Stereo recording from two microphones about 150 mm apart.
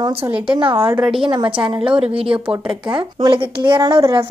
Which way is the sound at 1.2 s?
35° right (ahead or behind).